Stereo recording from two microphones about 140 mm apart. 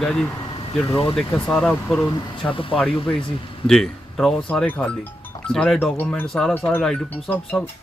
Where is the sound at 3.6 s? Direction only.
5° left (ahead or behind).